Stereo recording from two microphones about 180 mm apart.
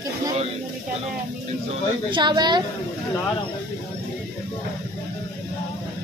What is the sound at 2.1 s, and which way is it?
Speech, 25° right (ahead or behind).